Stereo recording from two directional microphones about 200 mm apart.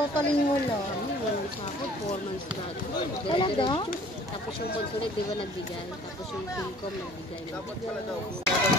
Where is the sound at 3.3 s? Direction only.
25° left (ahead or behind).